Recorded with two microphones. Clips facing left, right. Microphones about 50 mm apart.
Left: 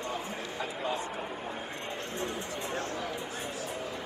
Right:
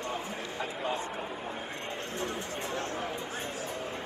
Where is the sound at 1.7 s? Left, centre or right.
Right.